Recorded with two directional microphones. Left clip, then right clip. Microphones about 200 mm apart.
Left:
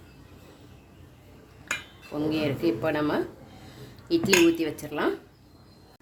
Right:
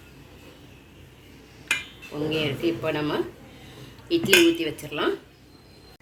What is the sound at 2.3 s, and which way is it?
Speech, 60° left (ahead or behind).